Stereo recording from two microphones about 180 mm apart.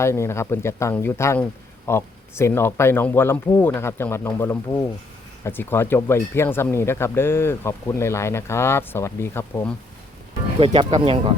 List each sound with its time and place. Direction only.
0.0 s speech: 15° left (ahead or behind)
10.6 s speech: 30° right (ahead or behind)